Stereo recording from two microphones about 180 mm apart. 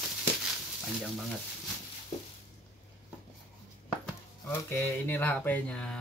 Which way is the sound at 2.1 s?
40° left (ahead or behind).